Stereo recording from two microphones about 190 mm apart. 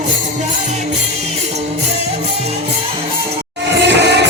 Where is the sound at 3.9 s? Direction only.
65° right (ahead or behind).